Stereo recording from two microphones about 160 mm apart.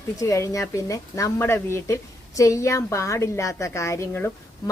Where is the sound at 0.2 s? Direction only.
20° left (ahead or behind).